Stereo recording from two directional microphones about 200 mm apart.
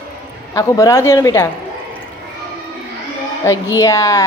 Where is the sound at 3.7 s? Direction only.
15° left (ahead or behind).